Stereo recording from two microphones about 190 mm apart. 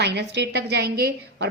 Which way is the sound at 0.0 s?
65° right (ahead or behind).